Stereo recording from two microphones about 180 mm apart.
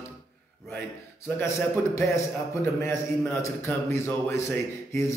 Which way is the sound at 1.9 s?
15° left (ahead or behind).